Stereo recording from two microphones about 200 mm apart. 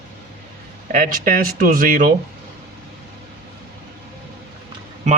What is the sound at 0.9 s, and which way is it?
Speech, 45° right (ahead or behind).